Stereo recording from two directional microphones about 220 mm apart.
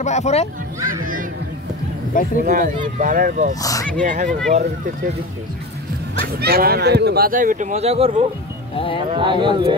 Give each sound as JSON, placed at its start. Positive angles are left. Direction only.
{"t": 0.0, "sound": "speech", "side_deg": 30}
{"t": 2.4, "sound": "speech", "side_deg": -35}
{"t": 3.6, "sound": "speech", "side_deg": 10}
{"t": 4.0, "sound": "speech", "side_deg": -35}
{"t": 6.2, "sound": "speech", "side_deg": -45}
{"t": 8.7, "sound": "speech", "side_deg": 25}
{"t": 9.1, "sound": "speech", "side_deg": -20}